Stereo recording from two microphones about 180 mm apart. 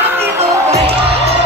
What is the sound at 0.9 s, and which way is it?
Music, 30° right (ahead or behind).